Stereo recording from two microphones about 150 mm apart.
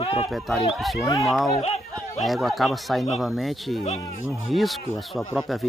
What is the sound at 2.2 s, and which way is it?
Speech, centre (ahead or behind).